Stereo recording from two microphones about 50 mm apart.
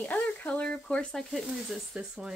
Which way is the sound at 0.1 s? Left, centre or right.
Left.